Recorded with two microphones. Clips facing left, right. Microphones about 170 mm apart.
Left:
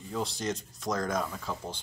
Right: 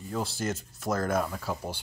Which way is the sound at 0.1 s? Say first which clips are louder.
Right 1 dB; 5° right (ahead or behind).